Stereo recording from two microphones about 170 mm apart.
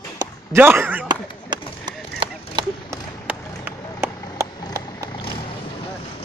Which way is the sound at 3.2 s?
10° right (ahead or behind).